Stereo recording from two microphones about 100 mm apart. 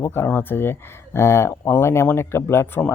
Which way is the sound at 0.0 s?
20° left (ahead or behind).